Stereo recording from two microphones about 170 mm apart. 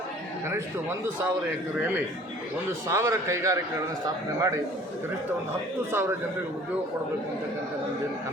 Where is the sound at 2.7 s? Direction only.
15° right (ahead or behind).